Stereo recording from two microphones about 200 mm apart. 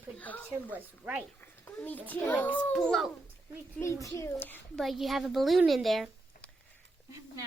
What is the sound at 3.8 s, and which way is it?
A woman's voice, 15° left (ahead or behind).